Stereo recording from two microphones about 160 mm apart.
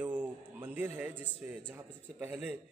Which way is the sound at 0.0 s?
10° right (ahead or behind).